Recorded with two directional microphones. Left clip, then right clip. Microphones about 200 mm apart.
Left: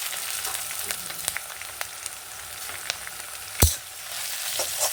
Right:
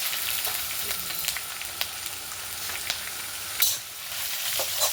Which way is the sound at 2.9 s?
5° left (ahead or behind).